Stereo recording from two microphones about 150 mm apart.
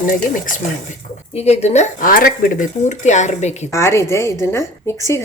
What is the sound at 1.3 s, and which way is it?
Speech, 45° left (ahead or behind).